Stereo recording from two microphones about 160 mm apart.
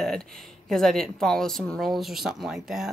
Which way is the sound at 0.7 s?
Centre (ahead or behind).